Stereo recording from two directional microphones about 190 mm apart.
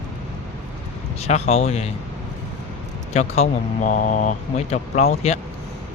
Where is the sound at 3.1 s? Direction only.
35° left (ahead or behind).